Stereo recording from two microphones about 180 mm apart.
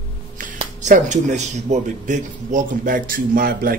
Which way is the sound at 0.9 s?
40° right (ahead or behind).